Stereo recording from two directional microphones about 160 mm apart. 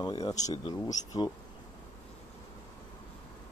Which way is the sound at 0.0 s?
25° left (ahead or behind).